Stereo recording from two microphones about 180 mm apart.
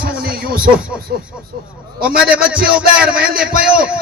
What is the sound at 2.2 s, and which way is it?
Speech, 5° right (ahead or behind).